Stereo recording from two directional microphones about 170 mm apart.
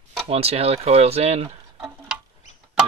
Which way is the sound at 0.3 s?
35° right (ahead or behind).